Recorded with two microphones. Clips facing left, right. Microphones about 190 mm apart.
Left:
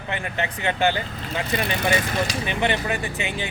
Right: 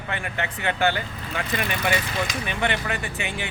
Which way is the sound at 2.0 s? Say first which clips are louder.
Left 3 dB; 45° left (ahead or behind).